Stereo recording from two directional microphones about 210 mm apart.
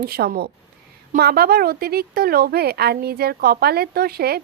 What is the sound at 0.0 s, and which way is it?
A woman's voice, 45° right (ahead or behind).